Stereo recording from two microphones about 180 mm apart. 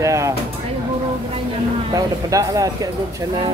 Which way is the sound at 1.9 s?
20° right (ahead or behind).